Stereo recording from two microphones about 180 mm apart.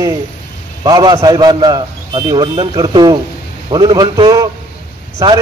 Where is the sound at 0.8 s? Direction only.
20° right (ahead or behind).